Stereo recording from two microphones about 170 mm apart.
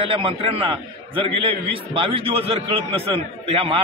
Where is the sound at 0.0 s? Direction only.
30° right (ahead or behind).